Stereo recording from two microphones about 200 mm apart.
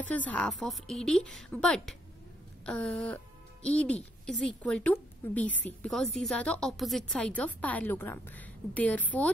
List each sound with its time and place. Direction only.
0.0 s a woman's voice: 10° left (ahead or behind)